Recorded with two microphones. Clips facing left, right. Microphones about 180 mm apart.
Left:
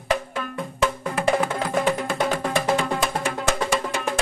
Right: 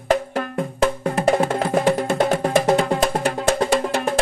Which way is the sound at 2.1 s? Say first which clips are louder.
Right 5 dB; 25° right (ahead or behind).